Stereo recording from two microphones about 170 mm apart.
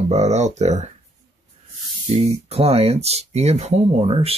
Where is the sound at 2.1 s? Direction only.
35° right (ahead or behind).